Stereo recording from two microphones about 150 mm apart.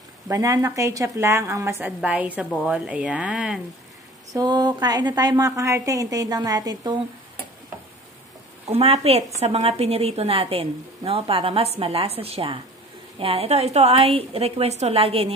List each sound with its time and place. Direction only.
0.3 s a woman's voice: 20° right (ahead or behind)
1.9 s speech: 10° right (ahead or behind)
4.3 s a woman's voice: 25° right (ahead or behind)
8.7 s a woman's voice: 40° right (ahead or behind)